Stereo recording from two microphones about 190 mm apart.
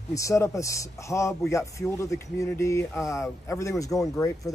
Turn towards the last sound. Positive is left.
turn(degrees=15)  # may be behind; listen again after turning